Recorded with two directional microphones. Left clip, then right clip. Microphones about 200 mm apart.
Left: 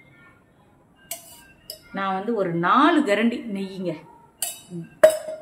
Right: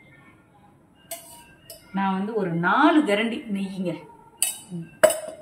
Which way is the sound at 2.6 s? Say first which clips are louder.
Left 1 dB; 35° left (ahead or behind).